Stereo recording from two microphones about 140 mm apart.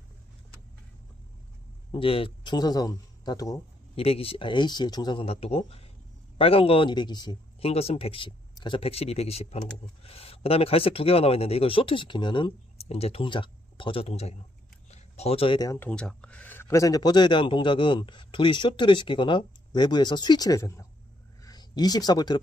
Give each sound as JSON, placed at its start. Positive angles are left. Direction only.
{"t": 1.9, "sound": "speech", "side_deg": 40}
{"t": 3.9, "sound": "speech", "side_deg": 45}
{"t": 7.6, "sound": "speech", "side_deg": 45}
{"t": 14.9, "sound": "a sound", "side_deg": 50}
{"t": 15.6, "sound": "speech", "side_deg": 20}
{"t": 15.9, "sound": "speech", "side_deg": 5}